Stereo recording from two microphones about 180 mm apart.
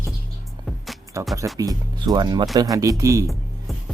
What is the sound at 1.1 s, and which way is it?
Speech, 15° right (ahead or behind).